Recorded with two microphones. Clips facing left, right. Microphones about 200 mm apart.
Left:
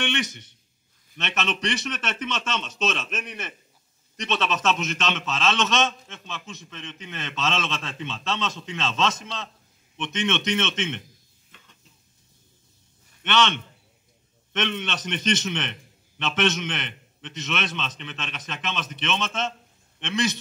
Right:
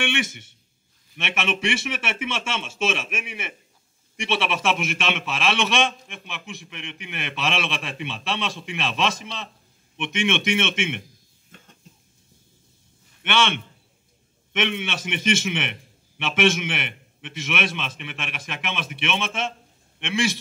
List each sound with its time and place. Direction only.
0.0 s a man's voice: 10° right (ahead or behind)
11.5 s a sound: 50° right (ahead or behind)
13.2 s a man's voice: 10° right (ahead or behind)